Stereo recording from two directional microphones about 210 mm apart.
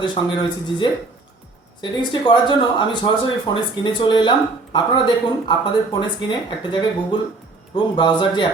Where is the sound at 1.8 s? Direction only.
20° left (ahead or behind).